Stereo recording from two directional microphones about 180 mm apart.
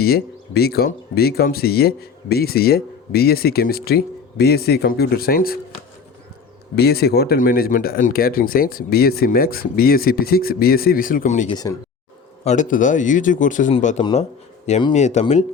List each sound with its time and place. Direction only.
0.0 s speech: 60° left (ahead or behind)
6.7 s speech: 60° left (ahead or behind)
11.4 s speech: 20° left (ahead or behind)
12.5 s speech: 45° left (ahead or behind)
14.0 s speech: 35° left (ahead or behind)